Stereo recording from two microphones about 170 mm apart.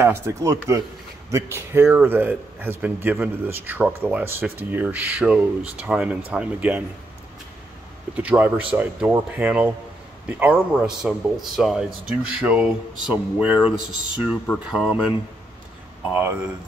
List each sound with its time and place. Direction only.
0.0 s speech: 15° right (ahead or behind)
8.2 s a man's voice: 10° right (ahead or behind)
16.1 s speech: 10° right (ahead or behind)